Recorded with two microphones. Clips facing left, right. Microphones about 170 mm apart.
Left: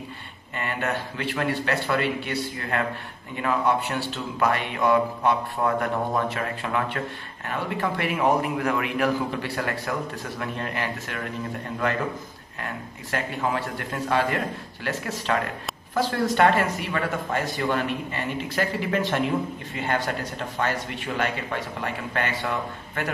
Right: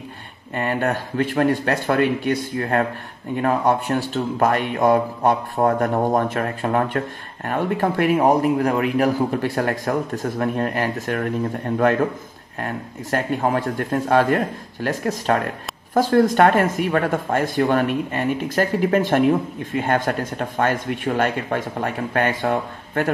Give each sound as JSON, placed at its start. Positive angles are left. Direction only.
{"t": 0.6, "sound": "speech", "side_deg": -40}